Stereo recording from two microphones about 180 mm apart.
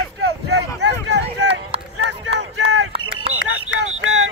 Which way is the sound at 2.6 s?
80° right.